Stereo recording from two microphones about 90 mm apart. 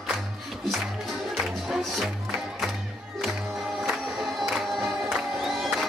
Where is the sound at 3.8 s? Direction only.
Centre (ahead or behind).